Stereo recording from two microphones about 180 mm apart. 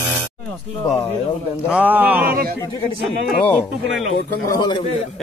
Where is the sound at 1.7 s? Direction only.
10° right (ahead or behind).